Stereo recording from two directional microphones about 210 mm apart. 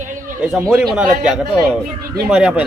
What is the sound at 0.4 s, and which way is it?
A man's voice, 5° right (ahead or behind).